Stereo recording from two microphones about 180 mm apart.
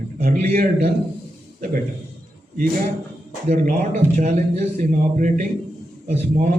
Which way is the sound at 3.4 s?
40° right (ahead or behind).